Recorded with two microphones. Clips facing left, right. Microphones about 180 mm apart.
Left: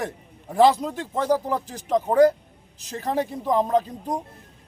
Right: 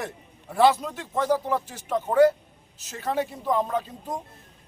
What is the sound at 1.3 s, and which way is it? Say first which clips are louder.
Speech: left 1 dB; 35° left (ahead or behind).